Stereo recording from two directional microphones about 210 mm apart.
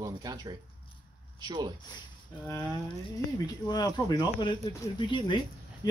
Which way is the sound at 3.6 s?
20° left (ahead or behind).